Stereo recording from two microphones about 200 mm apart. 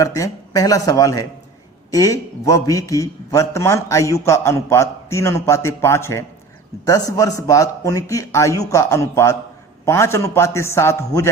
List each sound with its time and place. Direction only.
0.0 s a man's voice: 15° left (ahead or behind)